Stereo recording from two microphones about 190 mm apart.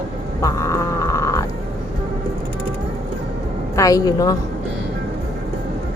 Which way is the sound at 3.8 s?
20° left (ahead or behind).